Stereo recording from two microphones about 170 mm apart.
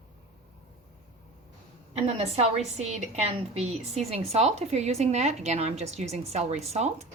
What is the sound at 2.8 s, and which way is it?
A woman's voice, 40° right (ahead or behind).